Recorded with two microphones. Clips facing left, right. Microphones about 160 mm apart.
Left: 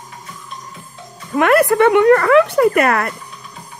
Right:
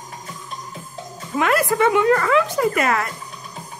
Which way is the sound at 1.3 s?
60° left (ahead or behind).